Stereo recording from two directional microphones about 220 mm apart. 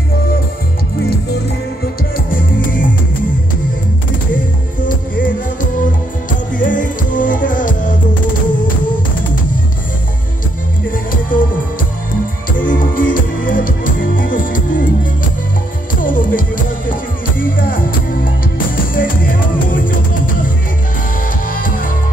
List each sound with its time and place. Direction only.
2.1 s music: 40° left (ahead or behind)
4.8 s music: 40° left (ahead or behind)
11.1 s music: 40° left (ahead or behind)
12.5 s music: 40° left (ahead or behind)
15.9 s music: 40° left (ahead or behind)
21.5 s music: 40° left (ahead or behind)